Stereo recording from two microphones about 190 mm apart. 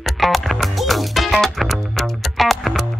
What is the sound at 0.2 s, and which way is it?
Music, centre (ahead or behind).